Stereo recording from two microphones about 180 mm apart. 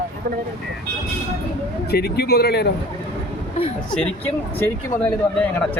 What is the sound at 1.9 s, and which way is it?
Speech, 65° left (ahead or behind).